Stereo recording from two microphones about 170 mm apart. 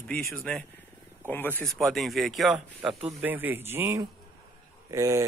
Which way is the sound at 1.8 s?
Centre (ahead or behind).